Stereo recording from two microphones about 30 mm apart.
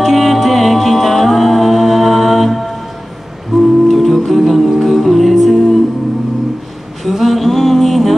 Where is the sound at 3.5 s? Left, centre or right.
Right.